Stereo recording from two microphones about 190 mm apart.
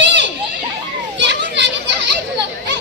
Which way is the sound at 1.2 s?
65° right (ahead or behind).